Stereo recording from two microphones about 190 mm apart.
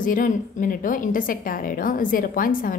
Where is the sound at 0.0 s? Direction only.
45° left (ahead or behind).